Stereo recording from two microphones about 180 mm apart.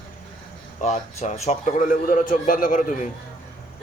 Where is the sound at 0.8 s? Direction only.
40° left (ahead or behind).